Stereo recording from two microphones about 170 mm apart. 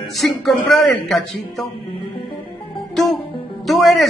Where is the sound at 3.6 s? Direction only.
Centre (ahead or behind).